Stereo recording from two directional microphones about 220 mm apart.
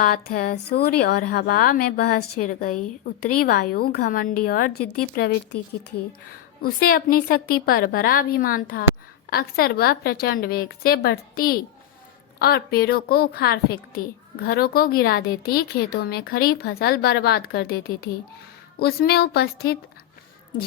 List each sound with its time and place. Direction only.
0.0 s a woman's voice: 40° left (ahead or behind)
6.6 s a woman's voice: 40° left (ahead or behind)